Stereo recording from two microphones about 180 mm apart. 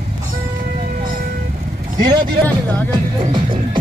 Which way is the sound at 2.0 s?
25° right (ahead or behind).